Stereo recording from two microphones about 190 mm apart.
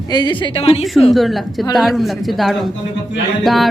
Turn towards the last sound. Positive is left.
turn(degrees=0)  # may be behind; listen again after turning